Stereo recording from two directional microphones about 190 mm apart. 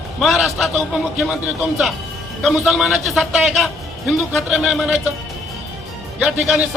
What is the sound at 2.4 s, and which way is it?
A man's voice, centre (ahead or behind).